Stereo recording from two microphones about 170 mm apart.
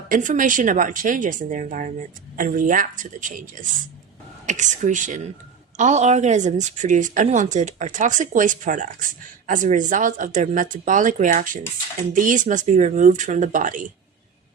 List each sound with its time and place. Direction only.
0.1 s a woman's voice: 50° right (ahead or behind)